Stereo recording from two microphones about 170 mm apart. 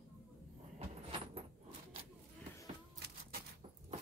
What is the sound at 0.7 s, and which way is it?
Vehicle, 35° right (ahead or behind).